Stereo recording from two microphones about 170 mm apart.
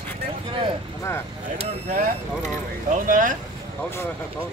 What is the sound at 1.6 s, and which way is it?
Speech, 45° right (ahead or behind).